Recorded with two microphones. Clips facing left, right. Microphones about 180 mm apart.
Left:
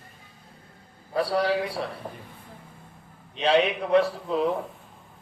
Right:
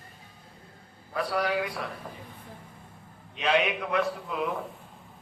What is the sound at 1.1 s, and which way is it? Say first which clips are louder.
Speech: left 4 dB; 30° left (ahead or behind).